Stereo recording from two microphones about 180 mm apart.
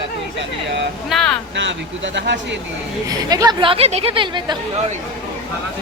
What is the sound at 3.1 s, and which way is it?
A woman's voice, 20° right (ahead or behind).